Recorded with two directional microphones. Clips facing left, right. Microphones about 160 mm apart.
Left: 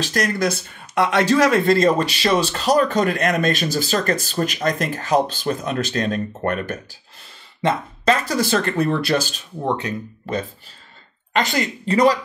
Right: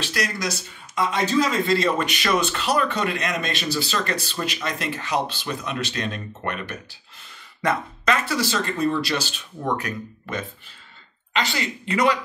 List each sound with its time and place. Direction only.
0.0 s speech: 45° left (ahead or behind); by 1.6 s 85° left
1.7 s a man's voice: 45° left (ahead or behind)
7.6 s speech: 35° left (ahead or behind)
8.4 s speech: 55° left (ahead or behind)
9.7 s speech: 25° left (ahead or behind)
11.3 s speech: 45° left (ahead or behind)